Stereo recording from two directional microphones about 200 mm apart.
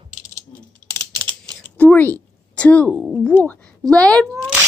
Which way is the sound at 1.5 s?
10° left (ahead or behind).